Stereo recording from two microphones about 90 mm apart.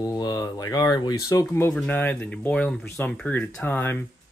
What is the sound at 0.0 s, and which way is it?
Speech, 45° left (ahead or behind).